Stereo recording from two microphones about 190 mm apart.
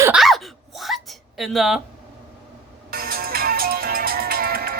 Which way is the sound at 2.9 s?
50° right (ahead or behind).